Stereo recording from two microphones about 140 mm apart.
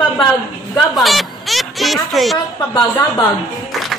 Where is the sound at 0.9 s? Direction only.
Centre (ahead or behind).